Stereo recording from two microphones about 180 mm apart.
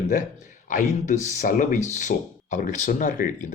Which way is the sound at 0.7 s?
40° left (ahead or behind).